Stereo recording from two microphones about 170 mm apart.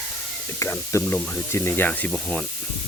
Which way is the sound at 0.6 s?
15° left (ahead or behind).